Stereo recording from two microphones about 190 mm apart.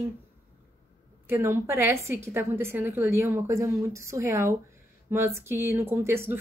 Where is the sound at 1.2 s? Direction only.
15° right (ahead or behind).